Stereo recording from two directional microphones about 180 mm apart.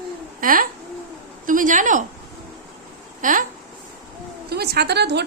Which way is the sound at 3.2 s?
45° right (ahead or behind).